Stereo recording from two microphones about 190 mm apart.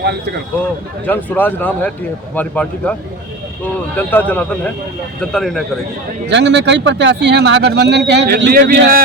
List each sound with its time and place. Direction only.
0.0 s speech: 60° right (ahead or behind)
0.6 s speech: 10° left (ahead or behind)
3.9 s speech: 10° left (ahead or behind)
6.2 s speech: 65° right (ahead or behind); by 8.8 s 50° right (ahead or behind)